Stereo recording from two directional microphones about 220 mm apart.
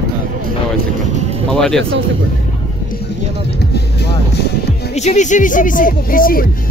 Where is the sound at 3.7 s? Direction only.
45° left (ahead or behind).